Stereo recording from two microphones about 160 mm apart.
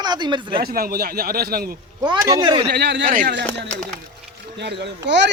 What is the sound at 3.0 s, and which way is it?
Speech, 60° right (ahead or behind).